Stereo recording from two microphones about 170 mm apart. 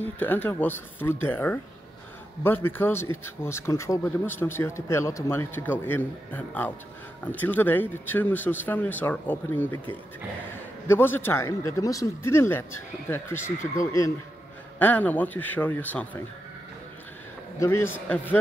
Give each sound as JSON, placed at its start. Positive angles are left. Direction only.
{"t": 0.0, "sound": "speech", "side_deg": 10}
{"t": 10.9, "sound": "speech", "side_deg": 10}
{"t": 17.6, "sound": "speech", "side_deg": 15}